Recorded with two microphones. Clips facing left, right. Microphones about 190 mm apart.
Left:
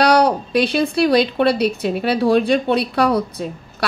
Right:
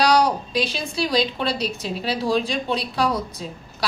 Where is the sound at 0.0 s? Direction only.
60° left (ahead or behind).